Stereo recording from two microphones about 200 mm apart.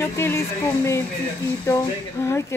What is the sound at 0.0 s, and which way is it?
Speech, 10° left (ahead or behind).